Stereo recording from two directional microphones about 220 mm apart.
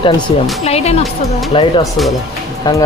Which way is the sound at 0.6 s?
30° left (ahead or behind).